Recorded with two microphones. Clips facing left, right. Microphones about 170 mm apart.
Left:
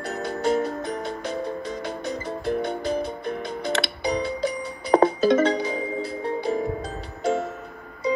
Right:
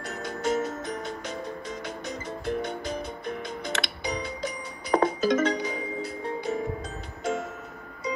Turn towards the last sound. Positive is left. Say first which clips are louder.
# left 5 dB
turn(degrees=35)  # may be behind; listen again after turning